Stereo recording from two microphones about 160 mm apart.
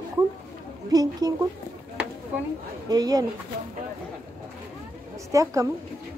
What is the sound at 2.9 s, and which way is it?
Speech, 25° right (ahead or behind).